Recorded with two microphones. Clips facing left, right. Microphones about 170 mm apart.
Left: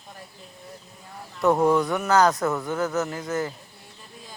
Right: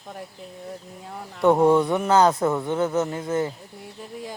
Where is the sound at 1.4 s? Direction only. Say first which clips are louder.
Right 3 dB; 30° right (ahead or behind).